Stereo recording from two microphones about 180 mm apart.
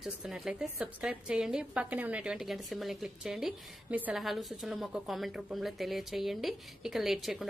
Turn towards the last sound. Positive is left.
turn(degrees=0)  # may be behind; listen again after turning